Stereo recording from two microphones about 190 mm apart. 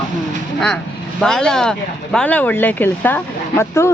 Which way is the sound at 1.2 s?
5° left (ahead or behind).